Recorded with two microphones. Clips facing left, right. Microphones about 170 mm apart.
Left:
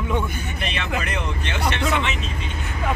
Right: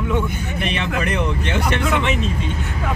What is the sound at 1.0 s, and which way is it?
Speech, 55° right (ahead or behind).